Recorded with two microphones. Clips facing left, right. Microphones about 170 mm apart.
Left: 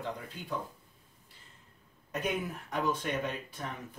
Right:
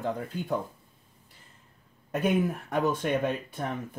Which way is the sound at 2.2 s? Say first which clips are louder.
Right 9 dB; 50° right (ahead or behind).